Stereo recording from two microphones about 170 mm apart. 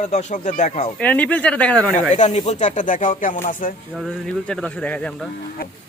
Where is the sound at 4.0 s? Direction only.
5° left (ahead or behind).